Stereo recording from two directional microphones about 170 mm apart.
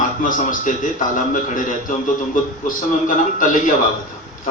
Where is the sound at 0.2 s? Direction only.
50° left (ahead or behind).